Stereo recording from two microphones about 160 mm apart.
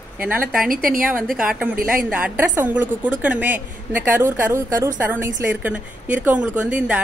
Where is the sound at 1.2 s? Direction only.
Centre (ahead or behind).